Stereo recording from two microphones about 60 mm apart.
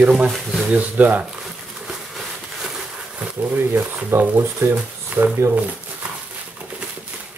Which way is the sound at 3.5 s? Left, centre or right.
Right.